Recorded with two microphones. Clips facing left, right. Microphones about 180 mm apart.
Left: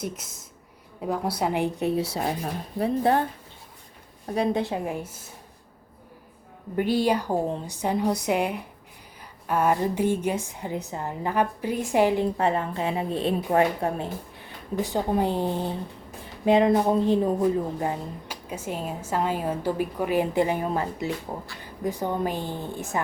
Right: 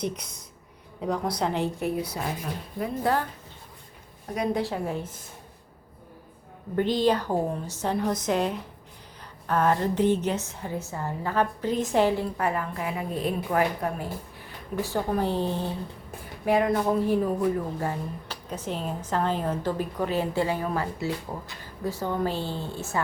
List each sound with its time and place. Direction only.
0.0 s speech: 5° left (ahead or behind); by 2.9 s 35° left (ahead or behind)
3.0 s speech: 25° left (ahead or behind)
4.4 s speech: 20° left (ahead or behind)
6.7 s a woman's voice: 10° left (ahead or behind)